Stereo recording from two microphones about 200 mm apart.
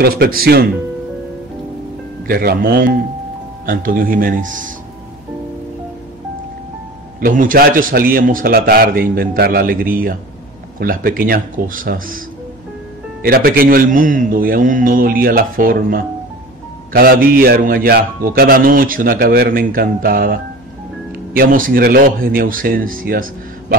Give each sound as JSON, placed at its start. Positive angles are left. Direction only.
{"t": 0.0, "sound": "a man's voice", "side_deg": -50}
{"t": 2.2, "sound": "a man's voice", "side_deg": -50}
{"t": 7.2, "sound": "a man's voice", "side_deg": -45}
{"t": 13.2, "sound": "a man's voice", "side_deg": -45}